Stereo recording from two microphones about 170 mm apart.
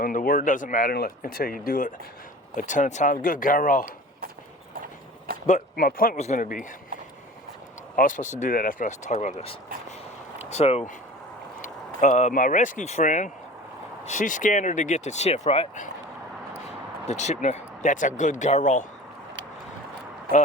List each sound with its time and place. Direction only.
0.0 s speech: 55° left (ahead or behind)
5.5 s speech: 50° left (ahead or behind)
6.1 s speech: 45° left (ahead or behind)
7.9 s speech: 50° left (ahead or behind)
11.9 s speech: 45° left (ahead or behind)
17.1 s speech: 40° left (ahead or behind)